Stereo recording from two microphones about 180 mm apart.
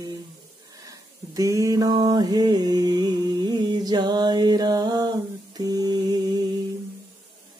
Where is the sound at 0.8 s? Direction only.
20° right (ahead or behind).